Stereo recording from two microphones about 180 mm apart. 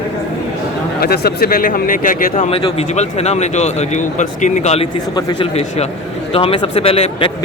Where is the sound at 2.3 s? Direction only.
35° left (ahead or behind).